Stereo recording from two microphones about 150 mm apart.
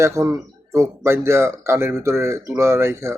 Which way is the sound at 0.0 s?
20° right (ahead or behind).